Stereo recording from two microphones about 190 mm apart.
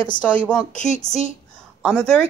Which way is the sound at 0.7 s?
40° left (ahead or behind).